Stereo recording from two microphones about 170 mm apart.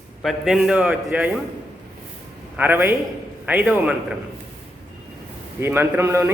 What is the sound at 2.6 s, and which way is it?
A man's voice, 10° right (ahead or behind).